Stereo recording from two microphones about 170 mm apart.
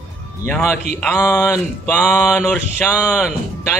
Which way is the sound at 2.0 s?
Centre (ahead or behind).